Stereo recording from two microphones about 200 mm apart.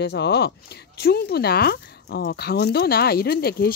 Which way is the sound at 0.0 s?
55° left (ahead or behind).